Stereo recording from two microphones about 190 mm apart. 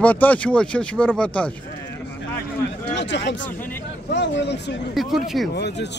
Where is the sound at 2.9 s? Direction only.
70° left (ahead or behind).